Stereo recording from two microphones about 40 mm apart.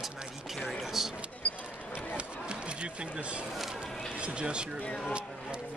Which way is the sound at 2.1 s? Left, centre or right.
Right.